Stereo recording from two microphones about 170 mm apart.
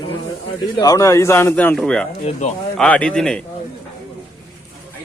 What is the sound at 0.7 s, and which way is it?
A man's voice, 20° left (ahead or behind).